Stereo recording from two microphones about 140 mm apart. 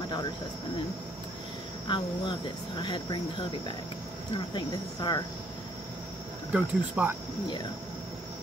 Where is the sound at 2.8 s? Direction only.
35° left (ahead or behind).